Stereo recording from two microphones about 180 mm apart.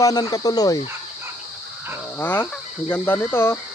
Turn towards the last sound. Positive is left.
turn(degrees=10)  # may be behind; listen again after turning